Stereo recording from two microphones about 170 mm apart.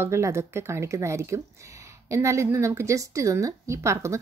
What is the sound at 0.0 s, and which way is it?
A woman's voice, 15° right (ahead or behind).